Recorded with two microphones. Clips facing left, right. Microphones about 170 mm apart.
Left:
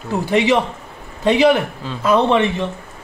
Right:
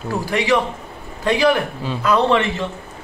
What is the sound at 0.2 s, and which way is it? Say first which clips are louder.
A man's voice: left 3 dB; 20° left (ahead or behind).